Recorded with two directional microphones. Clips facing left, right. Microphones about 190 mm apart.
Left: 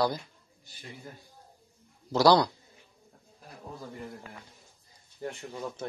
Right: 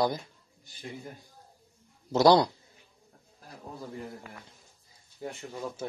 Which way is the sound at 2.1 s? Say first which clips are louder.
Right 1 dB; 20° right (ahead or behind).